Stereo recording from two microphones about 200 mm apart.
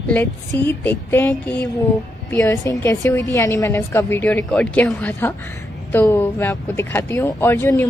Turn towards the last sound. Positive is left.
turn(degrees=15)  # may be behind; listen again after turning